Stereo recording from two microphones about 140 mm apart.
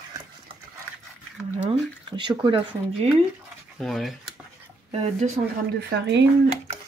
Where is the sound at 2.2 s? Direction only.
35° right (ahead or behind).